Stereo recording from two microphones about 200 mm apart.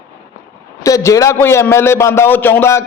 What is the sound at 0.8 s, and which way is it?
A man's voice, 15° left (ahead or behind).